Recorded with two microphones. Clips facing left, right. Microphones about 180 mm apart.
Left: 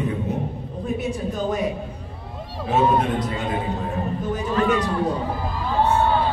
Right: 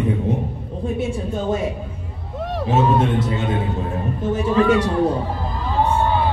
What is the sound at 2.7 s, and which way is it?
Speech, 25° right (ahead or behind).